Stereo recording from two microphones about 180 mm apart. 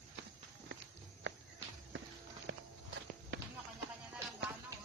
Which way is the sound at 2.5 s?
90° right.